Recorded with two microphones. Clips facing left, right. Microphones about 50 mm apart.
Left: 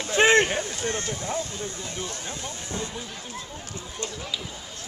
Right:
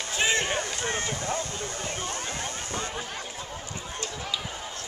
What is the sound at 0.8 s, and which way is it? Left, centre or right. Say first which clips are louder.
Speech: left 2 dB; right.